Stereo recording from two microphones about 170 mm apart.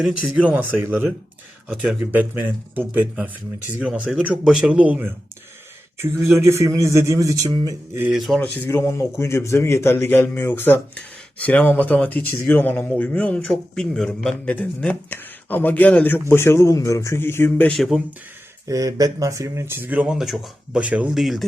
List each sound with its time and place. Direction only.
0.0 s speech: 5° right (ahead or behind); by 8.0 s 20° right (ahead or behind)
8.0 s speech: centre (ahead or behind)
8.4 s a man's voice: 10° left (ahead or behind)
18.7 s speech: 20° right (ahead or behind); by 21.4 s centre (ahead or behind)